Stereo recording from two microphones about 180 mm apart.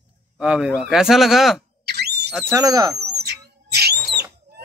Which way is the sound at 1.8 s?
65° right (ahead or behind).